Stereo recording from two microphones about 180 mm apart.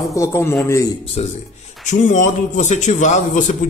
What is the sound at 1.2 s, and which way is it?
A man's voice, 35° left (ahead or behind).